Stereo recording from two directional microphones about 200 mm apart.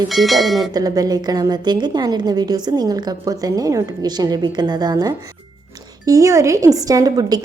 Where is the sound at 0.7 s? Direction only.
20° right (ahead or behind).